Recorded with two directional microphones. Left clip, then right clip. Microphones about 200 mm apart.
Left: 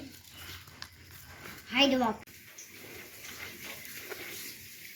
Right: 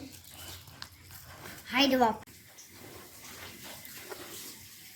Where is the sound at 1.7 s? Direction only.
50° right (ahead or behind).